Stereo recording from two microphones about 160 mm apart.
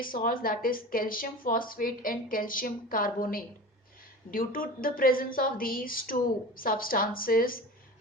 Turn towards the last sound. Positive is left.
turn(degrees=65)  # may be behind; listen again after turning